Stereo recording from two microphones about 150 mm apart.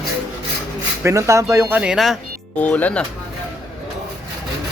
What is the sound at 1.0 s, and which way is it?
Speech, 20° right (ahead or behind).